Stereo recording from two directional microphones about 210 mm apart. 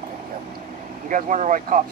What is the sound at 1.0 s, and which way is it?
Speech, 35° right (ahead or behind).